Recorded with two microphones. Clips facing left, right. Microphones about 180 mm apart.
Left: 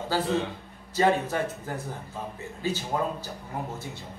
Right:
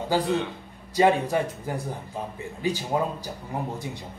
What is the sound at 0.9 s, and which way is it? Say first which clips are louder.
Speech: right 3 dB; 15° right (ahead or behind).